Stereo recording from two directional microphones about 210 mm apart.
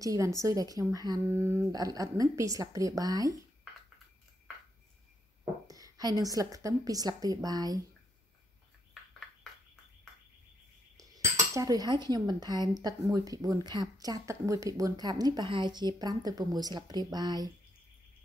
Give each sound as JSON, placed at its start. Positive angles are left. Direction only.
{"t": 0.0, "sound": "a woman's voice", "side_deg": -15}
{"t": 5.7, "sound": "a woman's voice", "side_deg": -15}
{"t": 11.0, "sound": "cutlery", "side_deg": -15}